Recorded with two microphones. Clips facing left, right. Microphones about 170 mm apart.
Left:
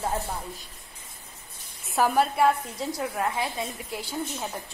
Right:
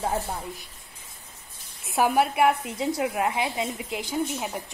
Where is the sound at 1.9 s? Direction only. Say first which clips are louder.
Right 1 dB; 15° right (ahead or behind).